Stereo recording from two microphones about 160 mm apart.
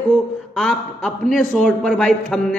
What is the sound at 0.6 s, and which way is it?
A man's voice, 5° left (ahead or behind).